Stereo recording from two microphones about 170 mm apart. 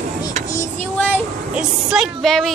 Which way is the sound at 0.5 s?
15° left (ahead or behind).